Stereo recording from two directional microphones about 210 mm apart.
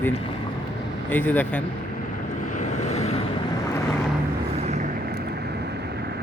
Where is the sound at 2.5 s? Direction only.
35° left (ahead or behind).